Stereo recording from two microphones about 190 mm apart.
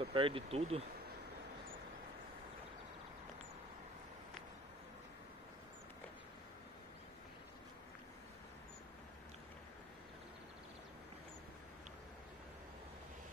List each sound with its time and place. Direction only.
0.0 s speech: 30° right (ahead or behind)